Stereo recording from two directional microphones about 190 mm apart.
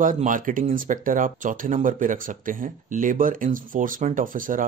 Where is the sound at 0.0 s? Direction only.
45° right (ahead or behind).